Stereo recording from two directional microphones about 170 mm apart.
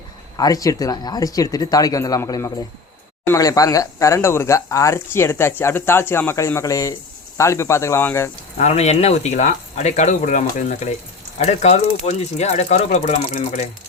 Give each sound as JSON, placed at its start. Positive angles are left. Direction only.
{"t": 0.3, "sound": "speech", "side_deg": 20}
{"t": 8.5, "sound": "speech", "side_deg": 40}